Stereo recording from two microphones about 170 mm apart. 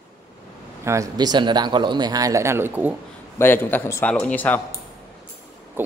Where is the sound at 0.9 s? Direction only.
20° right (ahead or behind).